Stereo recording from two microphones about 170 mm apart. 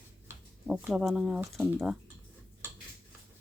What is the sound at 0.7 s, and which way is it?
Speech, 5° right (ahead or behind).